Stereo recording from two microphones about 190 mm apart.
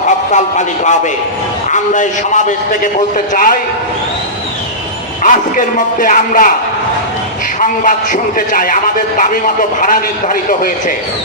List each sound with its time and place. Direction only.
0.3 s a man's voice: 40° left (ahead or behind)
5.2 s a man's voice: 45° left (ahead or behind)
7.6 s a man's voice: 45° left (ahead or behind)